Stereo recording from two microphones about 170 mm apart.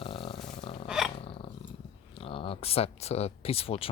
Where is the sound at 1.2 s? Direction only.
35° left (ahead or behind).